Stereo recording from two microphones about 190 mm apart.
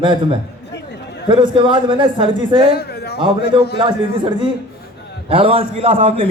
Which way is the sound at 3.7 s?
25° right (ahead or behind).